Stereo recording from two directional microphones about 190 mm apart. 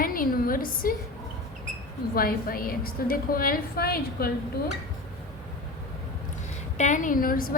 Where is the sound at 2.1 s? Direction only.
50° left (ahead or behind).